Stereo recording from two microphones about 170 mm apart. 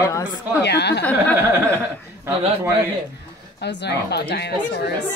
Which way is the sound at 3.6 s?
85° left.